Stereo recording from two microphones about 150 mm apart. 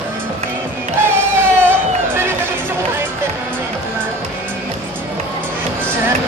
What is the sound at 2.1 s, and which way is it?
Music, 15° right (ahead or behind).